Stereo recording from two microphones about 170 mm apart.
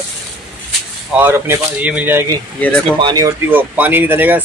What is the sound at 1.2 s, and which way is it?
Speech, 10° right (ahead or behind).